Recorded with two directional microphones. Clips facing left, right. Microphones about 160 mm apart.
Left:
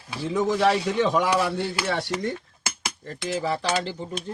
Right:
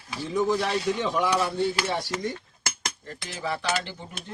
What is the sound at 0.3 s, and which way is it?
Chopping, 85° left.